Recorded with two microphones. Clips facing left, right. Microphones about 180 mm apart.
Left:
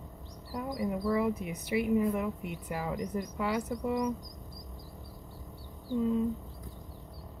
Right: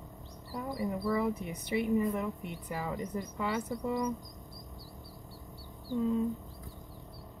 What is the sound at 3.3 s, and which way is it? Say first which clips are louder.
Speech: left 2 dB; centre (ahead or behind).